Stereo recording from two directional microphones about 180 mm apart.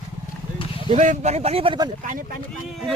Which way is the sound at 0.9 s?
40° right (ahead or behind).